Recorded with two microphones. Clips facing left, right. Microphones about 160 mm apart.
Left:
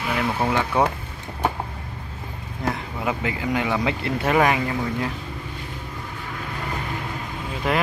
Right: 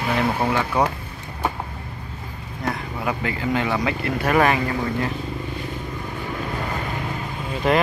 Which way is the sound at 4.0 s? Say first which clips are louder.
Right 1 dB; 25° left (ahead or behind).